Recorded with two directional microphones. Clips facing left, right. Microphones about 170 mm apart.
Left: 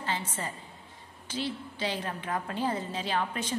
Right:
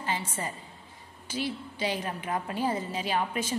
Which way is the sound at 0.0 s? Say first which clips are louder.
Right 1 dB; 15° right (ahead or behind).